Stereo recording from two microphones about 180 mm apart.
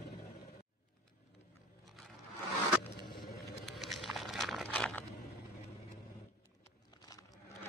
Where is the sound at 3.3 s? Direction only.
65° left (ahead or behind).